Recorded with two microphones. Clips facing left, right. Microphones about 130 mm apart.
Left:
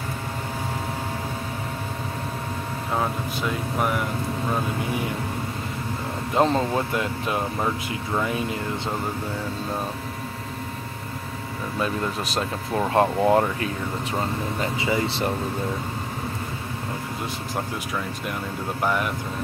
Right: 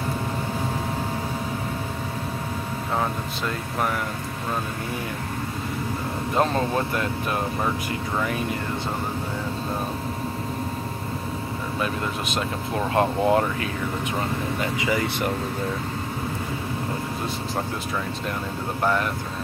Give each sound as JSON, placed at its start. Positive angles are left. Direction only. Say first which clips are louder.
{"t": 3.0, "sound": "speech", "louder": "left 1 dB", "side_deg": 5}
{"t": 6.3, "sound": "speech", "louder": "left 2 dB", "side_deg": 20}
{"t": 12.9, "sound": "speech", "louder": "left 1 dB", "side_deg": 25}
{"t": 14.8, "sound": "speech", "louder": "left 1 dB", "side_deg": 25}
{"t": 18.8, "sound": "speech", "louder": "right 1 dB", "side_deg": 10}